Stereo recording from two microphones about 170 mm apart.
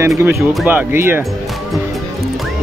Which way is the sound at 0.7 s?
10° right (ahead or behind).